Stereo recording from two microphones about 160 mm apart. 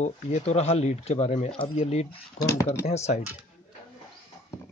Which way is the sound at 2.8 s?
45° left (ahead or behind).